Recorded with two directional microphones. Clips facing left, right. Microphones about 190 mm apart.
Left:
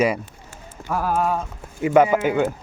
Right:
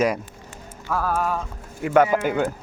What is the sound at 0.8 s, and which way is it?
Clip-clop, 15° left (ahead or behind).